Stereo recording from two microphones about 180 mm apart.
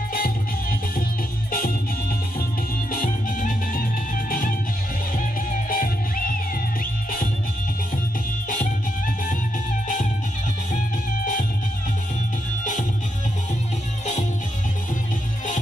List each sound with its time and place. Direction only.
0.1 s music: 50° left (ahead or behind)
2.9 s music: 50° left (ahead or behind)